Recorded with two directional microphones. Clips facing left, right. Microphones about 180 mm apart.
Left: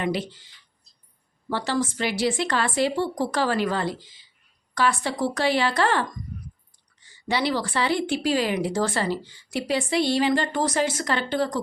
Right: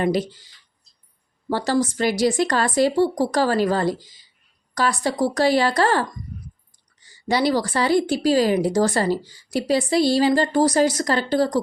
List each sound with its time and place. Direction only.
0.0 s a woman's voice: 40° right (ahead or behind)